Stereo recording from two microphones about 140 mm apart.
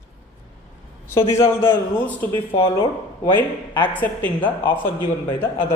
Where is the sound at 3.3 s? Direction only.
15° left (ahead or behind).